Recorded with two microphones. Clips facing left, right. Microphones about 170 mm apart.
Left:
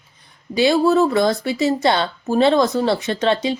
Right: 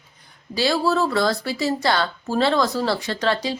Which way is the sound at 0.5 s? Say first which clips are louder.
Left 6 dB; 20° left (ahead or behind).